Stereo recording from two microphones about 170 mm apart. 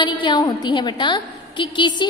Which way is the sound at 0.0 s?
30° left (ahead or behind).